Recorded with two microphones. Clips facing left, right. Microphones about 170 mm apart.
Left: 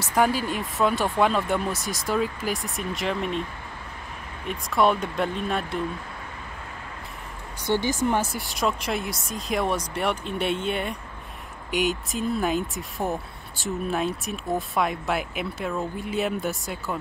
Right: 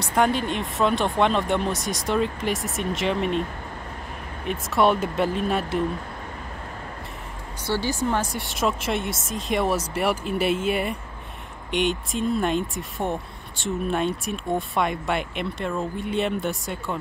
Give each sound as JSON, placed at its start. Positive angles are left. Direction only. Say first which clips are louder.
{"t": 0.0, "sound": "speech", "louder": "right 1 dB", "side_deg": 5}
{"t": 4.5, "sound": "speech", "louder": "right 1 dB", "side_deg": 0}
{"t": 7.6, "sound": "speech", "louder": "left 1 dB", "side_deg": 20}
{"t": 8.2, "sound": "speech", "louder": "right 1 dB", "side_deg": 0}